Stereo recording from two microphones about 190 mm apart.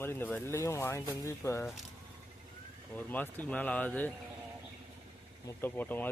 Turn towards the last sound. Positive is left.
turn(degrees=10)  # may be behind; listen again after turning